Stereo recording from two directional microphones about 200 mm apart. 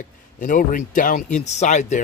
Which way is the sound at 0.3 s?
40° left (ahead or behind).